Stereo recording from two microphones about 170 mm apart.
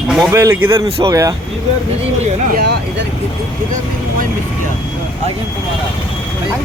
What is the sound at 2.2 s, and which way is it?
Speech, 55° right (ahead or behind).